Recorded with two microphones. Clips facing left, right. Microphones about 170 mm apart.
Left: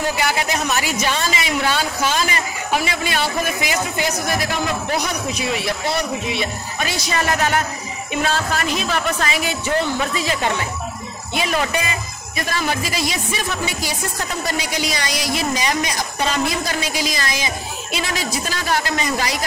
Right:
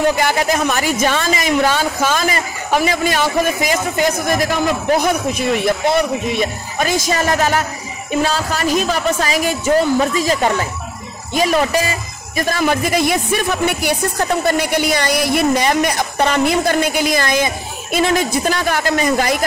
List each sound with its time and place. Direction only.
0.1 s speech: 45° right (ahead or behind)
12.4 s a woman's voice: 55° right (ahead or behind)